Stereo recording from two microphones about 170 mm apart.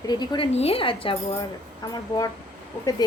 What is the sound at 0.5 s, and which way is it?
A woman's voice, 35° left (ahead or behind).